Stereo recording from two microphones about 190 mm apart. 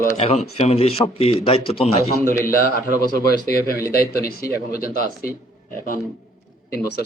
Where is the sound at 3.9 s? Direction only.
50° left (ahead or behind).